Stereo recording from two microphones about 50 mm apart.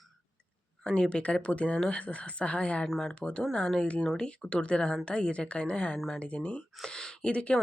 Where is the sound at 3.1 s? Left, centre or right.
Left.